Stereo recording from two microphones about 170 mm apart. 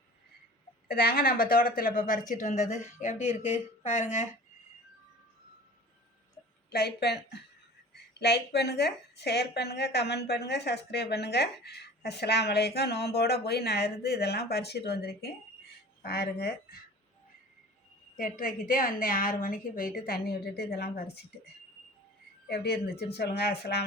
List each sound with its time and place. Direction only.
0.9 s a woman's voice: 65° left (ahead or behind); by 4.3 s 40° left (ahead or behind)
6.7 s a woman's voice: 70° left (ahead or behind)
18.2 s a woman's voice: 55° left (ahead or behind)
22.4 s a woman's voice: 70° left (ahead or behind)